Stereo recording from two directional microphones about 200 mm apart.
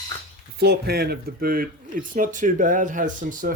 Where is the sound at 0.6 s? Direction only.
55° right (ahead or behind).